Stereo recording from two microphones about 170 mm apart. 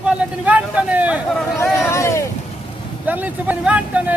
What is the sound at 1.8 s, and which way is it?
Speech, 15° left (ahead or behind).